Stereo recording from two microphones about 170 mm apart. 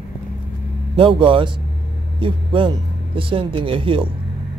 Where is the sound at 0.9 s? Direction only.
30° right (ahead or behind).